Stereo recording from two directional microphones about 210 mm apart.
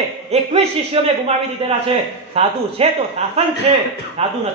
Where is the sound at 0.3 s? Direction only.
30° right (ahead or behind).